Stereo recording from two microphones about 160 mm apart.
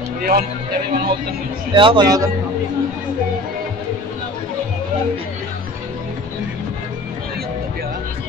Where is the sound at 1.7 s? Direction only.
30° right (ahead or behind).